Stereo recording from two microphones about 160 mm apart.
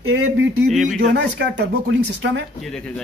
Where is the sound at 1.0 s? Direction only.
90° right.